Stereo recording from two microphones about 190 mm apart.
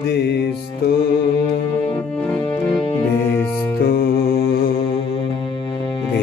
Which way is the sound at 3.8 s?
50° left (ahead or behind).